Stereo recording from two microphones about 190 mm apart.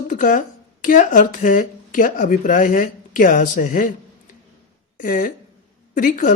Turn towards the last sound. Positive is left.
turn(degrees=45)  # may be behind; listen again after turning